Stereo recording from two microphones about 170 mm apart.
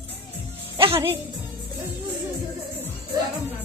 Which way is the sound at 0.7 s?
30° right (ahead or behind).